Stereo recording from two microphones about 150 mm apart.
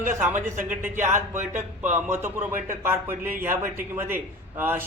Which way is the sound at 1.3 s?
15° right (ahead or behind).